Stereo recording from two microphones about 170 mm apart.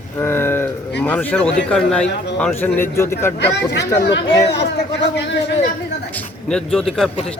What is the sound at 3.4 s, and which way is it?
Speech, 90° left.